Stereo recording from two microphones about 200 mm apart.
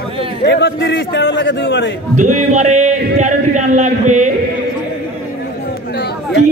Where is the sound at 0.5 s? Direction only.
60° left (ahead or behind).